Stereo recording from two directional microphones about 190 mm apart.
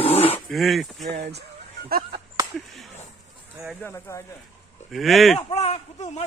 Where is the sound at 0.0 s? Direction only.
30° left (ahead or behind).